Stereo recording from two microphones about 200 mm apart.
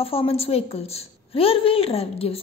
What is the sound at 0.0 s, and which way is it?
A woman's voice, 30° left (ahead or behind).